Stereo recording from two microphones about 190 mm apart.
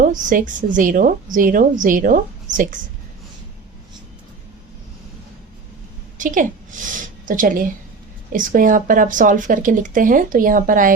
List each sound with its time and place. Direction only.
0.0 s a woman's voice: 45° right (ahead or behind)
6.1 s a woman's voice: 45° right (ahead or behind)